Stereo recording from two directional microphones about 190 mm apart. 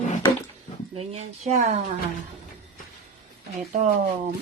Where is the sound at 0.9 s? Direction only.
35° right (ahead or behind).